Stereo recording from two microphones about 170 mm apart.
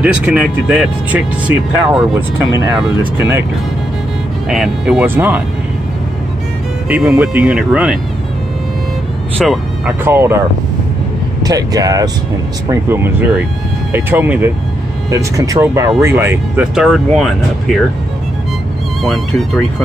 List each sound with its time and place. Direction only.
0.0 s speech: 5° right (ahead or behind)
4.5 s speech: centre (ahead or behind)
6.9 s speech: centre (ahead or behind)
9.4 s speech: centre (ahead or behind)
10.0 s speech: 15° right (ahead or behind)
11.4 s speech: 20° right (ahead or behind)
16.7 s speech: centre (ahead or behind)
19.0 s speech: centre (ahead or behind)